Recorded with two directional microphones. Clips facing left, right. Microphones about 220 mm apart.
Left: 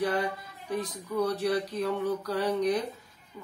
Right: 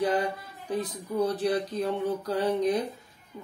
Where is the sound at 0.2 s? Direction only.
30° right (ahead or behind).